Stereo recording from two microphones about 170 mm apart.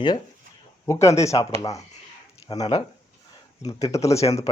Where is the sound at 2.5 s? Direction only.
25° left (ahead or behind).